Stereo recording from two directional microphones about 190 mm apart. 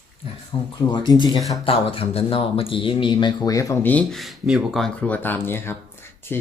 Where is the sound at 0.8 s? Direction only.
20° left (ahead or behind).